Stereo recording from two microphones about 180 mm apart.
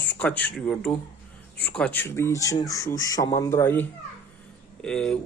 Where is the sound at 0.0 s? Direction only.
10° left (ahead or behind).